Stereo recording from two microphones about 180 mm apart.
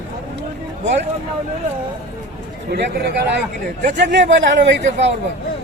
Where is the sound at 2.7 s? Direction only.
70° right (ahead or behind); by 4.6 s 85° right.